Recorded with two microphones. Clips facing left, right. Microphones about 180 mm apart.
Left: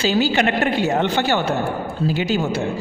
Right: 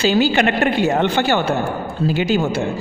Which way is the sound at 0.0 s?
60° right (ahead or behind).